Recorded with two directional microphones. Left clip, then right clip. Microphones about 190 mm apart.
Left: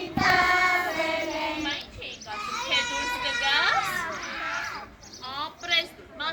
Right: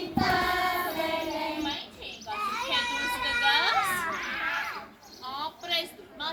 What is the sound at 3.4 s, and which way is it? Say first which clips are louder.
Children playing: left 1 dB; 25° left (ahead or behind).